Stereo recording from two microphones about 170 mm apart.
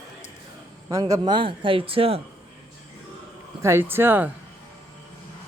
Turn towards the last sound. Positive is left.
turn(degrees=-10)  # may be behind; listen again after turning